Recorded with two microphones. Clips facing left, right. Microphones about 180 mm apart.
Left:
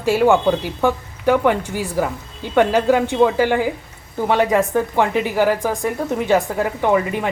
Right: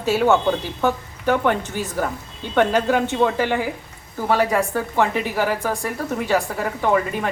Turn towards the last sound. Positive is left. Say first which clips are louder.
# left 2 dB
turn(degrees=15)  # may be behind; listen again after turning